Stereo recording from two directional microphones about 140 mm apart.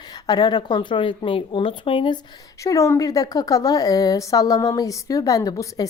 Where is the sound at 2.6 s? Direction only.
20° left (ahead or behind).